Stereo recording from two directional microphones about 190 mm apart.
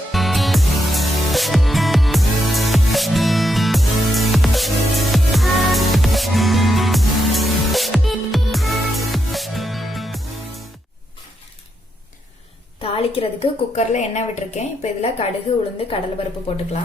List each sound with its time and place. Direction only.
0.1 s music: centre (ahead or behind)
12.8 s a woman's voice: 30° left (ahead or behind)